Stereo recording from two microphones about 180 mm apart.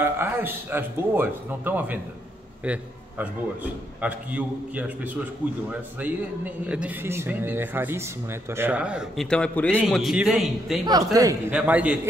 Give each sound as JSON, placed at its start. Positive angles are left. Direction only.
{"t": 0.0, "sound": "a man's voice", "side_deg": -10}
{"t": 11.1, "sound": "a man's voice", "side_deg": -20}
{"t": 11.5, "sound": "a man's voice", "side_deg": -5}